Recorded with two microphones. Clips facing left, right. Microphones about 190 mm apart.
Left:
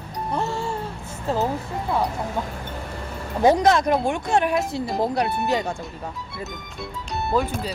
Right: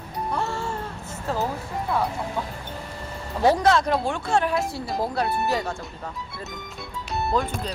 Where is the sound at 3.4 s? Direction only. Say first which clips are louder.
Left 2 dB; 20° left (ahead or behind).